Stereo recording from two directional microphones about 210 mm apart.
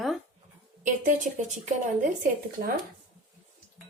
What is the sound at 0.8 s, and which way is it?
A woman's voice, 35° right (ahead or behind).